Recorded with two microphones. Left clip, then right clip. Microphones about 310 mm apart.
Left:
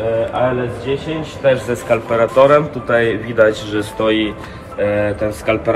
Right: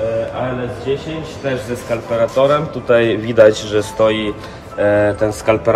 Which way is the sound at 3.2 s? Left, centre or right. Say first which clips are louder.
Right 3 dB; right.